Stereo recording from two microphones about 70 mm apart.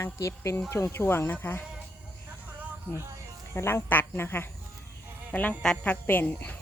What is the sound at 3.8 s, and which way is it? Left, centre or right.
Speech, left.